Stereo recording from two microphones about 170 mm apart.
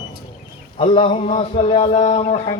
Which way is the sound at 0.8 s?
30° left (ahead or behind).